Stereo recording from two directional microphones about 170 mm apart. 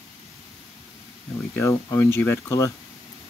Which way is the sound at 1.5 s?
15° left (ahead or behind).